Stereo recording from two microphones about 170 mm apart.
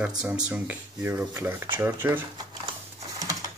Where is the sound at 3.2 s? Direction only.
20° right (ahead or behind).